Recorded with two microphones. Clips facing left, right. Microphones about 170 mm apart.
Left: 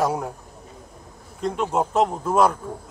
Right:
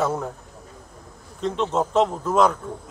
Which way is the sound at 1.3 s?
10° left (ahead or behind).